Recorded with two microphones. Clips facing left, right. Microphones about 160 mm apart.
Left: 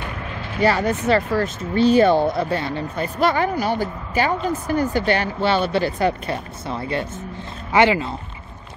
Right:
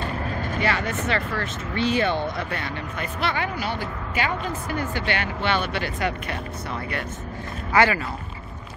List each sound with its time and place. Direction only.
0.3 s vehicle: 45° right (ahead or behind)
0.6 s speech: 40° left (ahead or behind); by 8.1 s 20° left (ahead or behind)